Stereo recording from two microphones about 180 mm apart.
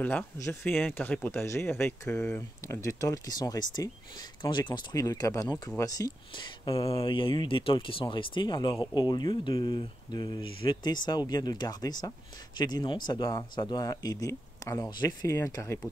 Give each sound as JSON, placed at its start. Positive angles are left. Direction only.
{"t": 0.0, "sound": "speech", "side_deg": 10}